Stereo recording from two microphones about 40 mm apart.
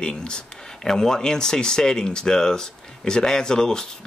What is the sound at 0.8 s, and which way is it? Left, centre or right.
Speech, centre.